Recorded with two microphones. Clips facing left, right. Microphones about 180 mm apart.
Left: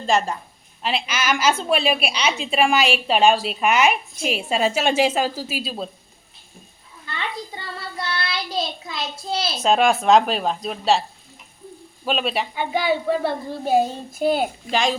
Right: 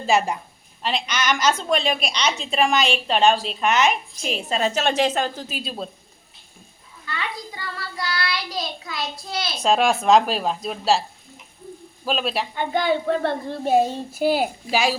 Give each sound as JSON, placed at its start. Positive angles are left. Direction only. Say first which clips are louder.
{"t": 0.0, "sound": "a woman's voice", "louder": "right 1 dB", "side_deg": -10}
{"t": 0.8, "sound": "a woman's voice", "louder": "even", "side_deg": 5}
{"t": 7.2, "sound": "child singing", "louder": "left 2 dB", "side_deg": 25}
{"t": 9.6, "sound": "a woman's voice", "louder": "left 1 dB", "side_deg": 0}
{"t": 12.0, "sound": "a woman's voice", "louder": "left 1 dB", "side_deg": 0}